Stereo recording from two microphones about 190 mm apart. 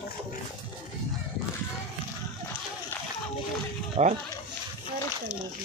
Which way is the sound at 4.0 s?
40° right (ahead or behind).